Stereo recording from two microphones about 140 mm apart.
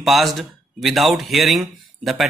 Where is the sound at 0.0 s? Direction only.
Centre (ahead or behind).